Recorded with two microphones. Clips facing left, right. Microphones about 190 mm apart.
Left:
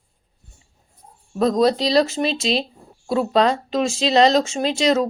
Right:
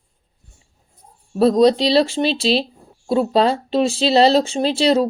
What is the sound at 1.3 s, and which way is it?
Speech, 30° right (ahead or behind).